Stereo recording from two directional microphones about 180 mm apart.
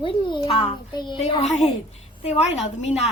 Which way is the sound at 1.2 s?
40° left (ahead or behind).